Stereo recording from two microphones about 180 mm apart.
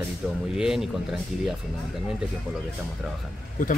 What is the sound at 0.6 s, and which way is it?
Speech, 5° right (ahead or behind).